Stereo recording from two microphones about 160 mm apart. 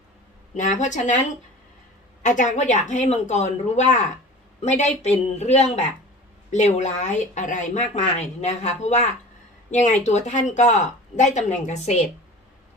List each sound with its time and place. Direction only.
0.5 s speech: 50° left (ahead or behind)
2.2 s speech: 50° left (ahead or behind)